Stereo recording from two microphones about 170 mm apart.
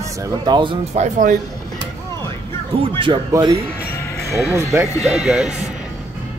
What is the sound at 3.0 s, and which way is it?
Speech, 30° right (ahead or behind).